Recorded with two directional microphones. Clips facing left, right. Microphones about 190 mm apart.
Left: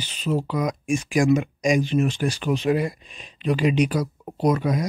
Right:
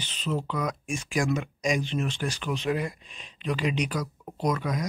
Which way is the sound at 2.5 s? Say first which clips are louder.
Left 6 dB; 10° left (ahead or behind).